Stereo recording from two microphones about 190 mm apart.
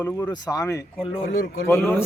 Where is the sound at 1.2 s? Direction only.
45° left (ahead or behind).